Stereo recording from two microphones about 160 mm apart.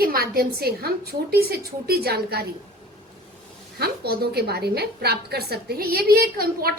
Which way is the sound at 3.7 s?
75° right (ahead or behind).